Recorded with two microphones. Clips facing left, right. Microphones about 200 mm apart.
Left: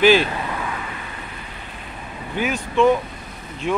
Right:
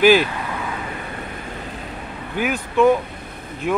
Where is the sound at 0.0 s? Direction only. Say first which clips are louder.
Right 1 dB; 10° right (ahead or behind).